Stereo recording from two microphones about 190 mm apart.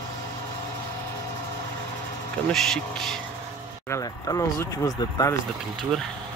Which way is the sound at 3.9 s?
20° left (ahead or behind).